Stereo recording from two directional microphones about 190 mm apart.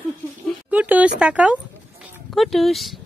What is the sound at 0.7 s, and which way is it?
Speech, 10° right (ahead or behind).